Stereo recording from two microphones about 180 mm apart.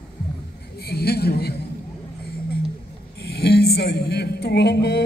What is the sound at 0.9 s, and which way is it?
Speech, 60° left (ahead or behind).